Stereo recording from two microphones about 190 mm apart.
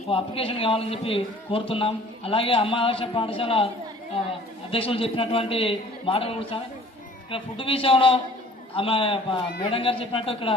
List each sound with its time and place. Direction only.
0.1 s a man's voice: 30° left (ahead or behind)
4.7 s a man's voice: 30° left (ahead or behind)